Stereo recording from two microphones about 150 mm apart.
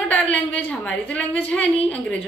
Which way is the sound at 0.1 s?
10° left (ahead or behind).